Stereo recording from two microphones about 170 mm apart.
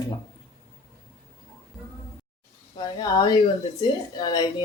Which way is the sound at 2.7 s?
25° left (ahead or behind).